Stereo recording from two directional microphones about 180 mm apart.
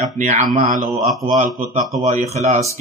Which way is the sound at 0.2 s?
45° right (ahead or behind).